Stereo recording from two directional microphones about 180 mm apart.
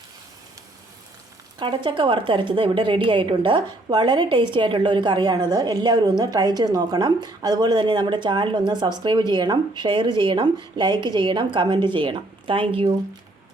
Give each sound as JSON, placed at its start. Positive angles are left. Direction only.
{"t": 1.5, "sound": "a woman's voice", "side_deg": -25}